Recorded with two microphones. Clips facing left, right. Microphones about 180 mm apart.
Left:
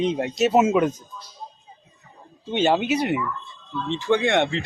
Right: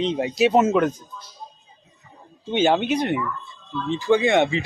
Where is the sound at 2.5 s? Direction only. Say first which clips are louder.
Right 1 dB; centre (ahead or behind).